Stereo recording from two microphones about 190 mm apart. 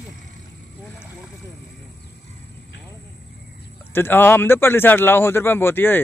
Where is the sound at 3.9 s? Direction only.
10° left (ahead or behind).